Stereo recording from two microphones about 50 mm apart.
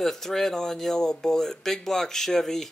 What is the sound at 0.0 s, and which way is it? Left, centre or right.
Speech, centre.